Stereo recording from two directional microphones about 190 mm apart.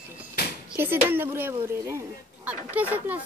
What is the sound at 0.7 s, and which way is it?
Speech, 10° right (ahead or behind).